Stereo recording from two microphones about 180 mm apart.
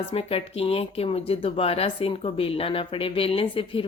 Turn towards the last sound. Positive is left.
turn(degrees=30)  # may be behind; listen again after turning